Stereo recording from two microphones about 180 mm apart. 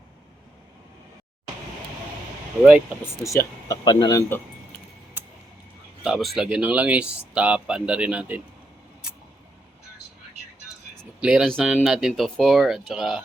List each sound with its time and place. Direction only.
3.0 s speech: 15° left (ahead or behind)
5.2 s a sound: 10° right (ahead or behind)
6.0 s speech: centre (ahead or behind)
11.2 s speech: 5° right (ahead or behind)